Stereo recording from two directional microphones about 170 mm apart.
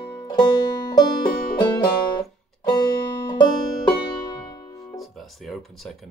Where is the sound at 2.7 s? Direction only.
25° left (ahead or behind).